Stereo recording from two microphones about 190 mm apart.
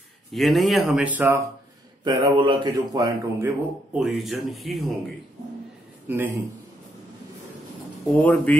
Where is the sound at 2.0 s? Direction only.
25° right (ahead or behind).